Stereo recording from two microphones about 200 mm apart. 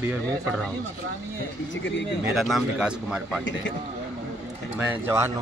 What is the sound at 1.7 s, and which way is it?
Speech, 65° left (ahead or behind).